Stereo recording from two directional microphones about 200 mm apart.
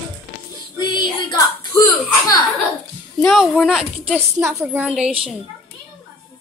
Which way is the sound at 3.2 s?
Centre (ahead or behind).